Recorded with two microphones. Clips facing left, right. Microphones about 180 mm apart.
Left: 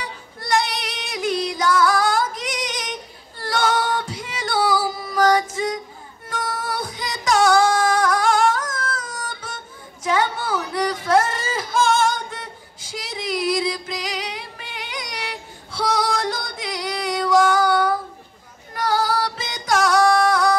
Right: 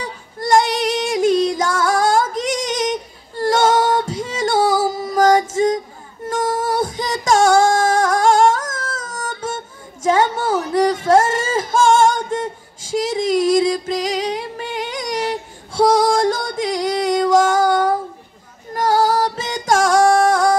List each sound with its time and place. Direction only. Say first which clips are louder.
0.0 s female singing: right 8 dB; 45° right (ahead or behind)
6.2 s music: right 8 dB; 45° right (ahead or behind)
6.7 s female singing: right 8 dB; 45° right (ahead or behind)
10.0 s a sound: right 5 dB; 45° right (ahead or behind)
18.7 s female singing: right 5 dB; 45° right (ahead or behind)